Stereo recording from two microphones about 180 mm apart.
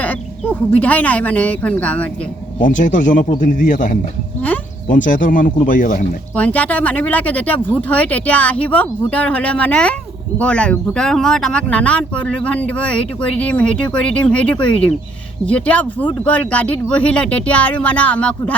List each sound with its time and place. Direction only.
0.0 s speech: 10° left (ahead or behind)
2.6 s speech: 45° left (ahead or behind)
6.3 s speech: 10° left (ahead or behind)